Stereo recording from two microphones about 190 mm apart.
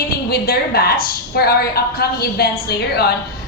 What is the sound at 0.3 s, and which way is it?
A woman's voice, 55° left (ahead or behind).